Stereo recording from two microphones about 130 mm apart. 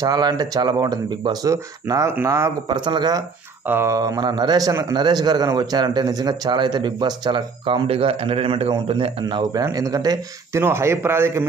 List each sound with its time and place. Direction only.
0.0 s a man's voice: 30° right (ahead or behind)
2.7 s a man's voice: 35° right (ahead or behind)
3.6 s a man's voice: 20° right (ahead or behind); by 9.4 s 45° right (ahead or behind)
9.4 s speech: 30° right (ahead or behind)